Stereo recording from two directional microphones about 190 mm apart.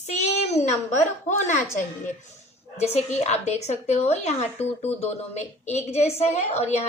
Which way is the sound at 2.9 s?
35° left (ahead or behind).